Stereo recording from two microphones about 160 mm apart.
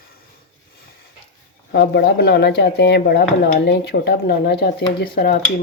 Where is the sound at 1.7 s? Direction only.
90° left.